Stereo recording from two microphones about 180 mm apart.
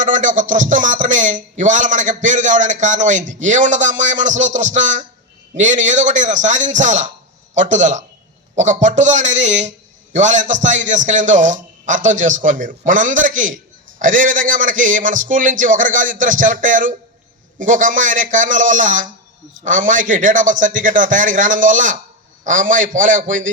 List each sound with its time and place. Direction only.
0.0 s speech: 45° right (ahead or behind)